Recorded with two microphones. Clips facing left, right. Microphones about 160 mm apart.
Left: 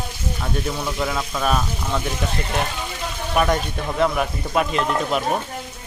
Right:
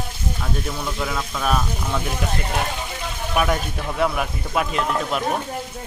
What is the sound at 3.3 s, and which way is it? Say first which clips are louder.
Speech: left 2 dB; 5° right (ahead or behind).